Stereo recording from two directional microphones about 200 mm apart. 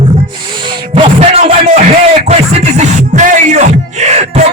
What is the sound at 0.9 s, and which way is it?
Music, 30° right (ahead or behind).